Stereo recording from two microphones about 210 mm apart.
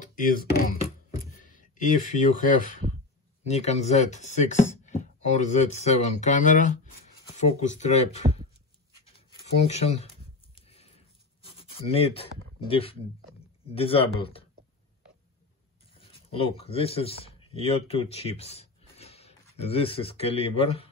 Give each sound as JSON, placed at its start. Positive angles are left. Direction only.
{"t": 0.0, "sound": "beatboxing", "side_deg": 40}
{"t": 1.4, "sound": "speech", "side_deg": 40}
{"t": 9.6, "sound": "speech", "side_deg": 30}
{"t": 10.5, "sound": "a sound", "side_deg": 30}
{"t": 11.4, "sound": "speech", "side_deg": 25}
{"t": 16.0, "sound": "speech", "side_deg": 25}